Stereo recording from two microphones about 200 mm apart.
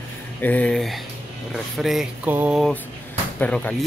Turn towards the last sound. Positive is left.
turn(degrees=5)  # may be behind; listen again after turning